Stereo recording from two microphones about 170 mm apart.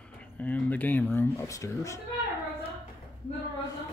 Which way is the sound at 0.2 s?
10° left (ahead or behind).